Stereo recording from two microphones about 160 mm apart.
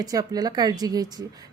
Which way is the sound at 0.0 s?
25° right (ahead or behind).